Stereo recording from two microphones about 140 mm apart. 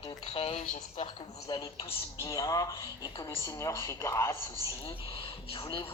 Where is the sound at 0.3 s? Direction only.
45° left (ahead or behind).